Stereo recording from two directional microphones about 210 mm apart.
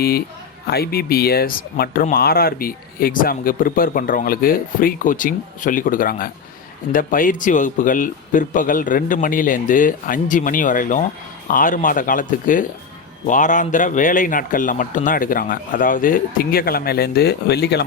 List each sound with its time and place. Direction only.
0.7 s speech: 45° left (ahead or behind)